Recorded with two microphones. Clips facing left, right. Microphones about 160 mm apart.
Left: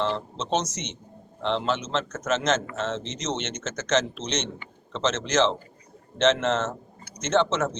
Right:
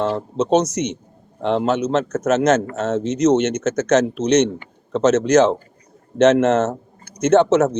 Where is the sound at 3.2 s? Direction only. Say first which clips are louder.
Right 15 dB; 65° right (ahead or behind).